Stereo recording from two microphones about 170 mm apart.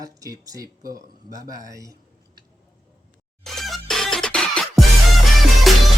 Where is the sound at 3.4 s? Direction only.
Centre (ahead or behind).